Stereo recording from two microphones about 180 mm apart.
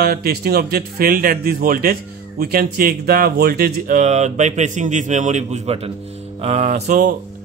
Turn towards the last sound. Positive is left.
turn(degrees=-45)  # may be behind; listen again after turning